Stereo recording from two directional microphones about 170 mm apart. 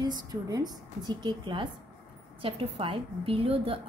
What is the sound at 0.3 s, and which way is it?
A woman's voice, 20° right (ahead or behind).